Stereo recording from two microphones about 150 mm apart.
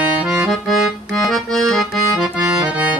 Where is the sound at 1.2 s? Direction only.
Centre (ahead or behind).